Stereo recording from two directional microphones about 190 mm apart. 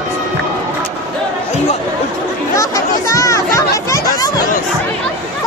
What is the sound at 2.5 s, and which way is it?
Chatter, 15° left (ahead or behind).